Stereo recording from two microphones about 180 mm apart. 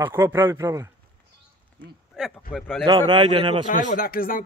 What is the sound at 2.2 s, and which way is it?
Speech, 5° right (ahead or behind).